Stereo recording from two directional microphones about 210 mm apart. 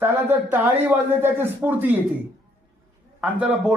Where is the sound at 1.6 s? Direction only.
10° right (ahead or behind).